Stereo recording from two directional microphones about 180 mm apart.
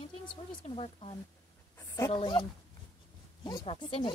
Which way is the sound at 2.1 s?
25° left (ahead or behind).